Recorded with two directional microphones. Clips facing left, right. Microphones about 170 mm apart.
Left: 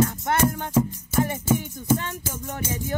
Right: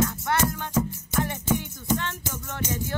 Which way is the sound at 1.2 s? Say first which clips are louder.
Left 4 dB; 10° left (ahead or behind).